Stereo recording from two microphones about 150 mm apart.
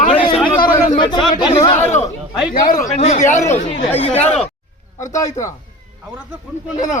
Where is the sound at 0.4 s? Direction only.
35° left (ahead or behind).